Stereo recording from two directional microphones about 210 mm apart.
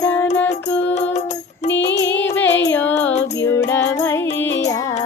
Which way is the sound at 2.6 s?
10° left (ahead or behind).